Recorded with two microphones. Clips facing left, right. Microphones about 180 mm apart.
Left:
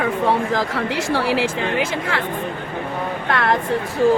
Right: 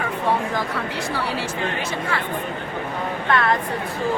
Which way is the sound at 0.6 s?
90° left.